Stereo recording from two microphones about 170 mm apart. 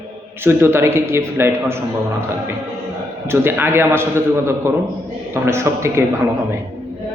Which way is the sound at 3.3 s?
15° right (ahead or behind).